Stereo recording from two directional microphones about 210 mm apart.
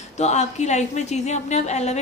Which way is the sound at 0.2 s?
35° left (ahead or behind).